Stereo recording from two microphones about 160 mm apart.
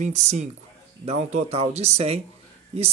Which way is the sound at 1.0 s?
45° right (ahead or behind).